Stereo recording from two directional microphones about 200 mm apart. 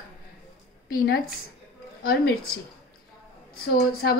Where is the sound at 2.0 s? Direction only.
50° left (ahead or behind).